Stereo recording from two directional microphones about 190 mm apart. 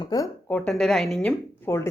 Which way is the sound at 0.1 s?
20° left (ahead or behind).